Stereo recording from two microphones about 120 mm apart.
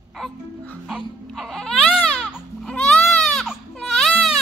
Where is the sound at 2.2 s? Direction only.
Centre (ahead or behind).